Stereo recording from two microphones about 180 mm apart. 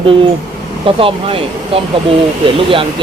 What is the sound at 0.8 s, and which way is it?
Speech, 30° right (ahead or behind).